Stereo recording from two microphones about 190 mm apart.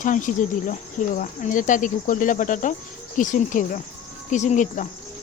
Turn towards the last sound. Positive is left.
turn(degrees=40)  # may be behind; listen again after turning